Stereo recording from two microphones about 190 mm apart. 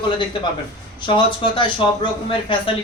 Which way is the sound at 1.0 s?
25° left (ahead or behind).